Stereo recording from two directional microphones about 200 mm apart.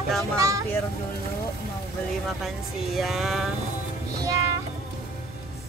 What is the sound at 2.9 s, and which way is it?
Speech, centre (ahead or behind).